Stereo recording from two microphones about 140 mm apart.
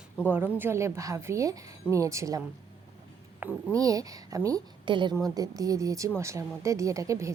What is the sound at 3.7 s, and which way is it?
Speech, 25° right (ahead or behind).